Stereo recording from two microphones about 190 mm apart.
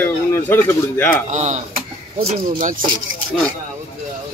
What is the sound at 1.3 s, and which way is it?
Speech, 40° right (ahead or behind).